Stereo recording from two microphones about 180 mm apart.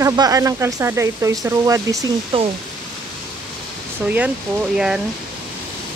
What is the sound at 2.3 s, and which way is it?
Speech, 30° right (ahead or behind).